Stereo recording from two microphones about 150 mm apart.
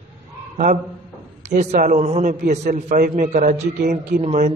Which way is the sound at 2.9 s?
65° right (ahead or behind).